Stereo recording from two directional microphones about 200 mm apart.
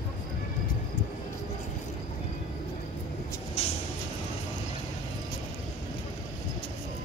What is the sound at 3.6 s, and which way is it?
Vehicle, 30° left (ahead or behind).